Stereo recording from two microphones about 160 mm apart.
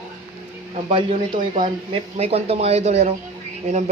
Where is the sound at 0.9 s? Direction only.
30° right (ahead or behind).